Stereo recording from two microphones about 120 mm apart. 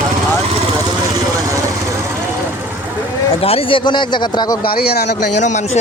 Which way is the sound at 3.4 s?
50° left (ahead or behind).